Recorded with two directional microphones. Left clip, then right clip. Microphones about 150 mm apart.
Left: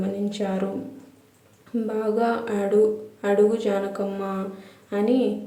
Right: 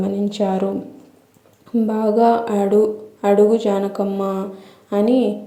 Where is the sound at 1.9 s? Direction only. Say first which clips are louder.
Right 8 dB; 35° right (ahead or behind).